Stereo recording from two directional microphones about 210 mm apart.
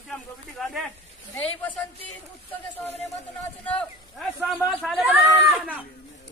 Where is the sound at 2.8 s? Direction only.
30° left (ahead or behind).